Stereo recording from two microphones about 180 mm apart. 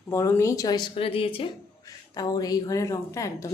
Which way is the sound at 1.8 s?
20° left (ahead or behind).